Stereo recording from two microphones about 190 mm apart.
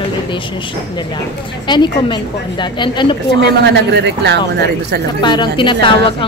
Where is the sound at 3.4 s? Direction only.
60° right (ahead or behind).